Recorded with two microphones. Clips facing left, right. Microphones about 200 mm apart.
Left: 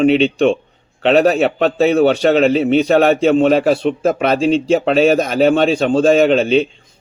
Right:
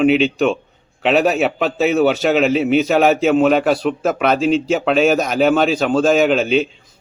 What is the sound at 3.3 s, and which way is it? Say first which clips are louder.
Speech: left 2 dB; 30° left (ahead or behind).